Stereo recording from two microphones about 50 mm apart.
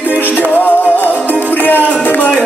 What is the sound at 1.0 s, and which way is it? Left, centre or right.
Music, left.